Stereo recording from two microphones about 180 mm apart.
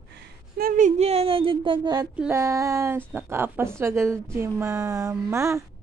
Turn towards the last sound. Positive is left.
turn(degrees=-15)  # may be behind; listen again after turning